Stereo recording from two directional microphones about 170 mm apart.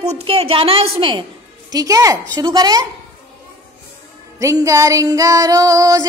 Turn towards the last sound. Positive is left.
turn(degrees=-20)  # may be behind; listen again after turning